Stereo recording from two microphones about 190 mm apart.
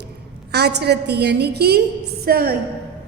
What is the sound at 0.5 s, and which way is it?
A woman's voice, 60° right (ahead or behind).